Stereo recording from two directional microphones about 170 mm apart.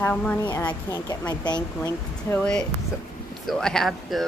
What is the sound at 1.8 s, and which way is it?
Speech, 10° left (ahead or behind).